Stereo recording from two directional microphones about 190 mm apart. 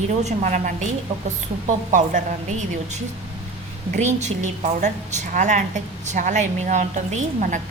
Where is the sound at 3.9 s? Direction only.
35° right (ahead or behind).